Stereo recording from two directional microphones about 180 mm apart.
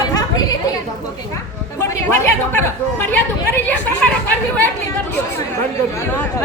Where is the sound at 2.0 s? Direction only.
10° left (ahead or behind).